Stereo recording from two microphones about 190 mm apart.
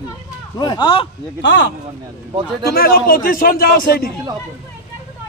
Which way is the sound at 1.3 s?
65° left (ahead or behind).